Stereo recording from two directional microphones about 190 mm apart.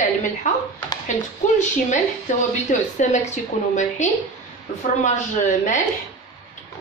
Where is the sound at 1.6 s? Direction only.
40° left (ahead or behind).